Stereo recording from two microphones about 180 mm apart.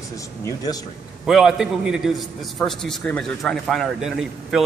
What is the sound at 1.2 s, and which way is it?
A man's voice, centre (ahead or behind).